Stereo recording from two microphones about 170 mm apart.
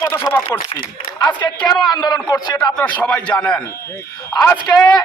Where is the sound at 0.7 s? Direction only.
30° left (ahead or behind).